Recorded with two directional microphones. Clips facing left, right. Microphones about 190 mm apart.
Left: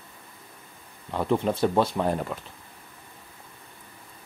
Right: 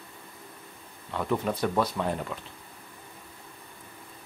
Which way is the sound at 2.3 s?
50° left (ahead or behind).